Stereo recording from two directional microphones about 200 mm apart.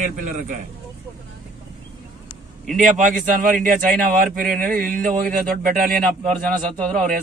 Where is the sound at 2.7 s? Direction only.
40° right (ahead or behind).